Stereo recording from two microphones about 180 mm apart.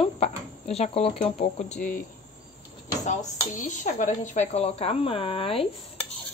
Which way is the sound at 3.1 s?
45° left (ahead or behind).